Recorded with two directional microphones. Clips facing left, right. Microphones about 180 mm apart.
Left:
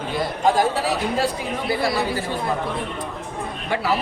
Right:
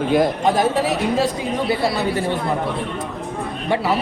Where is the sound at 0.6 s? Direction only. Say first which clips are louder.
Right 3 dB; 20° right (ahead or behind).